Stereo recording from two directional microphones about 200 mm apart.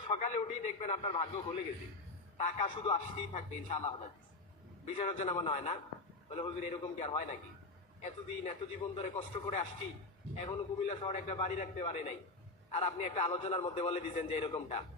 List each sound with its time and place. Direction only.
0.1 s a man's voice: 35° left (ahead or behind)